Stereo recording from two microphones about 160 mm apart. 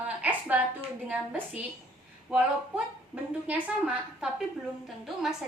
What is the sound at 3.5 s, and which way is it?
A woman's voice, 5° right (ahead or behind).